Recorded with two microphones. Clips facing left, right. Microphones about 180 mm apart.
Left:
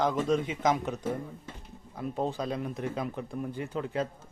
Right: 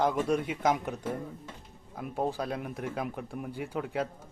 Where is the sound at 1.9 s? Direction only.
10° right (ahead or behind).